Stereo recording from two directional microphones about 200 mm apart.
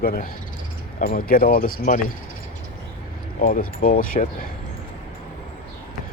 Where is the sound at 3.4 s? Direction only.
45° left (ahead or behind).